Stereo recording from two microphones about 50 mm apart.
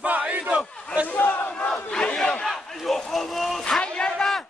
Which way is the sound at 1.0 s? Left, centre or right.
Left.